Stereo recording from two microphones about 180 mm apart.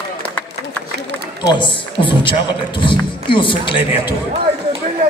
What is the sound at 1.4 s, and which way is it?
A man's voice, 25° left (ahead or behind).